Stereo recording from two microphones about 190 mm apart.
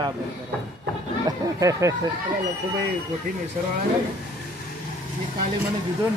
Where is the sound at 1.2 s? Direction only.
15° right (ahead or behind).